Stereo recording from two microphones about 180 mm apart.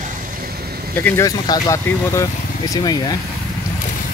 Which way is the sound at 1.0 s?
15° left (ahead or behind).